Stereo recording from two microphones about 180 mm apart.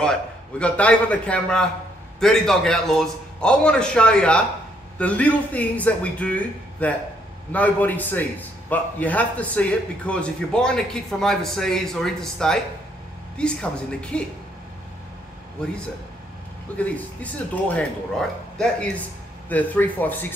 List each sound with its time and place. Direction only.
0.0 s a man's voice: 5° left (ahead or behind)
16.7 s a man's voice: 10° left (ahead or behind)